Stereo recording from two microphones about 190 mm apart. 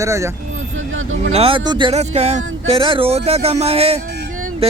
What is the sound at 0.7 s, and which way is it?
Vehicle, 90° right.